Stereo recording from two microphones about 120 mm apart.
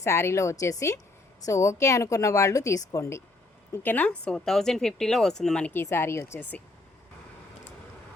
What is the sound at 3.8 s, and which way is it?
A woman's voice, 15° left (ahead or behind).